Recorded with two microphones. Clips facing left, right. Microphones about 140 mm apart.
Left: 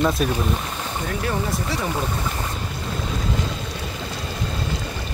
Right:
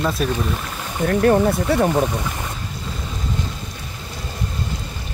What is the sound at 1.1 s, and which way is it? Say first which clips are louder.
Speech: right 11 dB; 55° right (ahead or behind).